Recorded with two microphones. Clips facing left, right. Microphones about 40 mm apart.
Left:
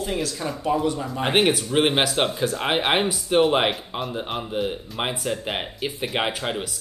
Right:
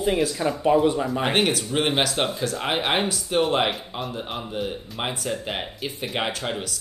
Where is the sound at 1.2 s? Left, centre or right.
Centre.